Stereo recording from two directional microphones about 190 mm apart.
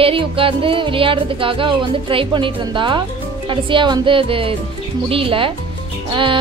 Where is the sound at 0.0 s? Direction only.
30° right (ahead or behind).